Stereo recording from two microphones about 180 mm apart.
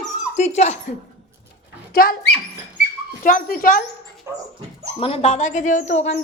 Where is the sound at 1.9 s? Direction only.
55° left (ahead or behind).